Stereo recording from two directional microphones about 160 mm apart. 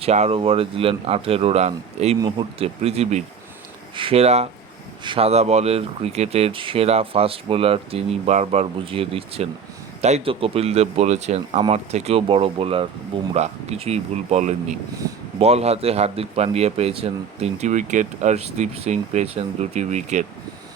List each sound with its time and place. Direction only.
0.0 s speech: 40° right (ahead or behind)